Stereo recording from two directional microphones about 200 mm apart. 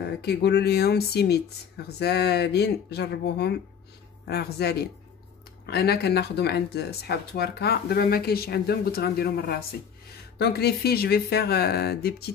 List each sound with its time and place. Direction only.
0.2 s speech: 55° left (ahead or behind)